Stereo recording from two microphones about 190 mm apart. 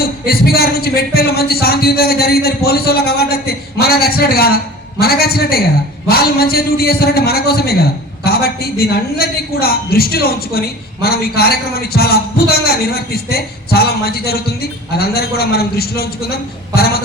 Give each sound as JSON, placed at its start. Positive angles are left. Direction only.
{"t": 0.0, "sound": "a man's voice", "side_deg": 55}